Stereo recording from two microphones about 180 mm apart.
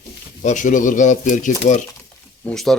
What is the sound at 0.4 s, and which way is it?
Speech, 45° left (ahead or behind).